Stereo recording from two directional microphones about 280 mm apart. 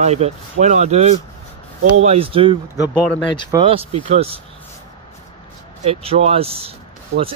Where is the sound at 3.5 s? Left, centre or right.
Centre.